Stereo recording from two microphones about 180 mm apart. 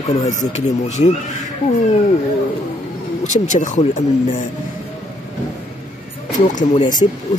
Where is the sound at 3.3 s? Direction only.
45° left (ahead or behind).